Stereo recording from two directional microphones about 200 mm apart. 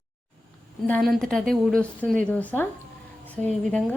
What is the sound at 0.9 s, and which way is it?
Speech, 5° left (ahead or behind).